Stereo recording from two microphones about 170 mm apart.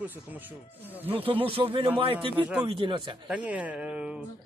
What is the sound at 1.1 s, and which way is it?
A man's voice, 30° right (ahead or behind).